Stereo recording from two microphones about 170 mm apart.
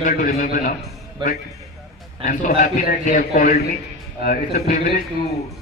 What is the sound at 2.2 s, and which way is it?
A man's voice, 50° left (ahead or behind).